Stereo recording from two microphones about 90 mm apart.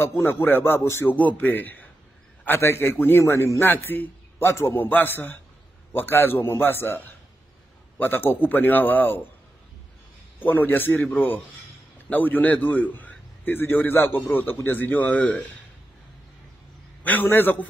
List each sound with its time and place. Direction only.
0.0 s a man's voice: 25° left (ahead or behind)
10.4 s a man's voice: 20° left (ahead or behind)
17.0 s a man's voice: 20° left (ahead or behind)